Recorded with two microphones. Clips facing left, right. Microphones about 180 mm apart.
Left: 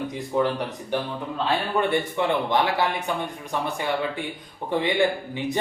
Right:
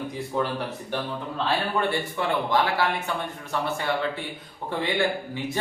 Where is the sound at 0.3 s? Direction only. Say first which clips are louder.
Left 4 dB; 15° left (ahead or behind).